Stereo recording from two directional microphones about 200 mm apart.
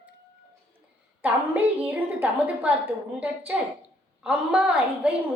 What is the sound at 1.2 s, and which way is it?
A woman's voice, 5° right (ahead or behind).